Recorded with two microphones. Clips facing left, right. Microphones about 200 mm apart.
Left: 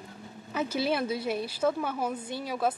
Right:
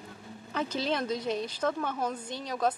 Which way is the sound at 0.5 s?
10° left (ahead or behind).